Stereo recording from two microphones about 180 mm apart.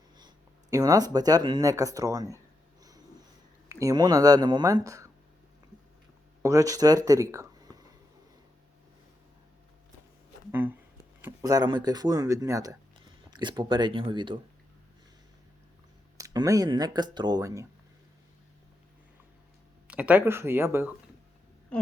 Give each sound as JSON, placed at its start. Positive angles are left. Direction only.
{"t": 0.2, "sound": "speech", "side_deg": -20}
{"t": 3.7, "sound": "speech", "side_deg": -20}
{"t": 6.4, "sound": "speech", "side_deg": -20}
{"t": 10.5, "sound": "speech", "side_deg": -10}
{"t": 16.1, "sound": "speech", "side_deg": -20}
{"t": 19.9, "sound": "speech", "side_deg": -5}